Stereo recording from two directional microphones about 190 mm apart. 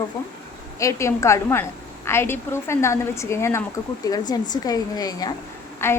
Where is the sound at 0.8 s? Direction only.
15° left (ahead or behind).